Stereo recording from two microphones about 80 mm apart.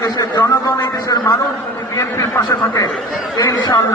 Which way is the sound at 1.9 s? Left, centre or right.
Left.